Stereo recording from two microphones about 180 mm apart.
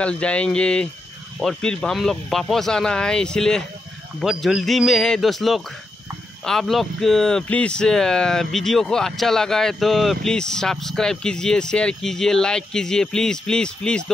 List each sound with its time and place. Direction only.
0.0 s speech: 5° left (ahead or behind)